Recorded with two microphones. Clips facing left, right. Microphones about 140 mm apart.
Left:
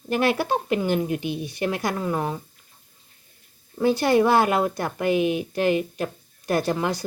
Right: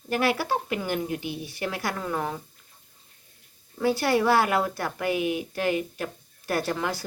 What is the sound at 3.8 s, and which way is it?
A woman's voice, 20° left (ahead or behind).